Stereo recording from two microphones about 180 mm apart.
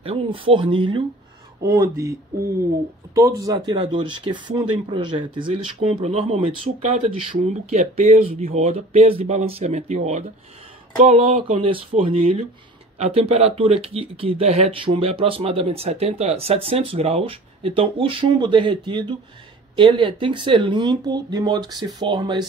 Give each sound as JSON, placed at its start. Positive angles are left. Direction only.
{"t": 0.0, "sound": "speech", "side_deg": -30}
{"t": 3.2, "sound": "speech", "side_deg": -20}